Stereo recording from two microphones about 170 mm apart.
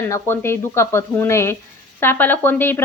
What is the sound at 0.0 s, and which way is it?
A woman's voice, 15° left (ahead or behind).